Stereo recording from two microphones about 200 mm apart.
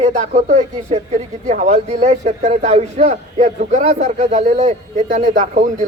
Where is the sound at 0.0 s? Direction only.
35° right (ahead or behind).